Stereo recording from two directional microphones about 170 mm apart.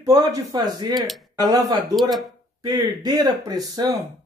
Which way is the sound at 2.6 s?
25° right (ahead or behind).